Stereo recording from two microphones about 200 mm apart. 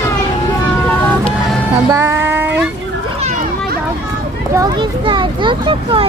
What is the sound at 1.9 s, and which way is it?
Speech, 10° right (ahead or behind).